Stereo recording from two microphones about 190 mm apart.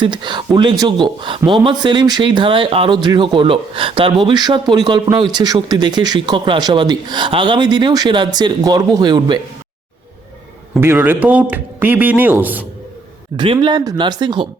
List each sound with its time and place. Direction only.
0.0 s speech: 25° right (ahead or behind)
10.8 s speech: 10° right (ahead or behind)
13.3 s speech: 25° right (ahead or behind)